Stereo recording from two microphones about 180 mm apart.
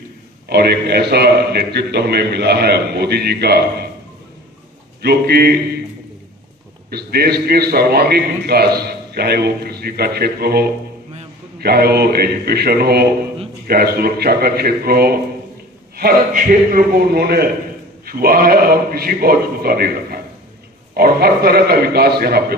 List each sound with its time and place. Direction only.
0.4 s a man's voice: 60° right (ahead or behind)
5.0 s a man's voice: 60° right (ahead or behind)
6.9 s a man's voice: 60° right (ahead or behind)